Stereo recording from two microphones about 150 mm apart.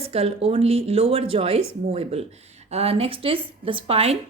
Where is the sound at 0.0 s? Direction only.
45° right (ahead or behind).